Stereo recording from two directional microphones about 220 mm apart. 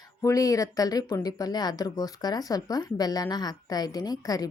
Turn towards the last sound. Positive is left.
turn(degrees=15)  # may be behind; listen again after turning